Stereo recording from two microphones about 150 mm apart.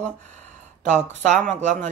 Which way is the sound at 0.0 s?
50° right (ahead or behind).